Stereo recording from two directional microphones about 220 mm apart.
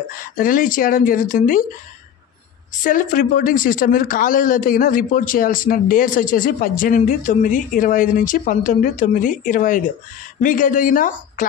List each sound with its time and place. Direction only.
0.4 s speech: 40° left (ahead or behind)
2.8 s speech: 35° left (ahead or behind)